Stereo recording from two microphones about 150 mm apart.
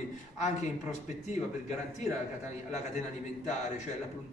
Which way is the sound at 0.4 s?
50° left (ahead or behind).